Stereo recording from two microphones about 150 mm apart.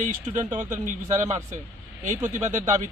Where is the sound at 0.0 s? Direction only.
55° right (ahead or behind).